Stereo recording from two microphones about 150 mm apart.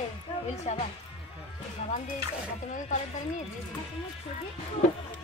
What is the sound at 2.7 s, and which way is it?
Speech, 50° left (ahead or behind).